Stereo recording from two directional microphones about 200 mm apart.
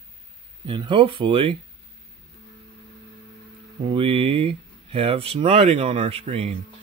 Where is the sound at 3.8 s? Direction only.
25° right (ahead or behind).